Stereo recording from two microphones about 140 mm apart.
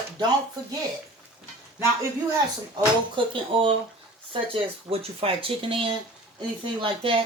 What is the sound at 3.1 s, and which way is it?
Speech, 35° right (ahead or behind).